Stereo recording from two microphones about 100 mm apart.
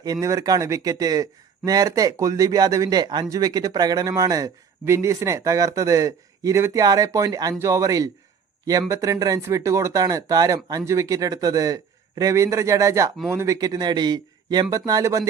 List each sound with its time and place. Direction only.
0.0 s speech: 35° right (ahead or behind)